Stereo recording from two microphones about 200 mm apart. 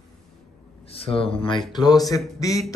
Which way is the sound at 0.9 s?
30° left (ahead or behind).